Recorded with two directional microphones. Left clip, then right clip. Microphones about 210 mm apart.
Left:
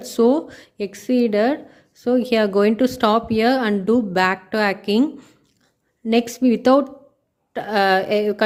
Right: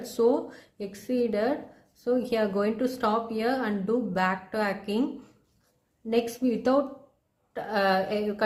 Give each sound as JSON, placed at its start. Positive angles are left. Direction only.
{"t": 0.2, "sound": "speech", "side_deg": 40}
{"t": 6.1, "sound": "speech", "side_deg": 40}